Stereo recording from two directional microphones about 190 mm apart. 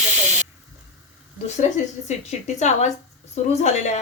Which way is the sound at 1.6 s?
40° left (ahead or behind).